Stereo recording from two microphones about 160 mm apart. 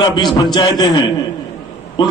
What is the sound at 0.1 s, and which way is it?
A man's voice, 25° left (ahead or behind).